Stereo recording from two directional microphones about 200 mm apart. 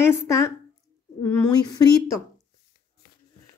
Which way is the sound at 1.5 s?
20° left (ahead or behind).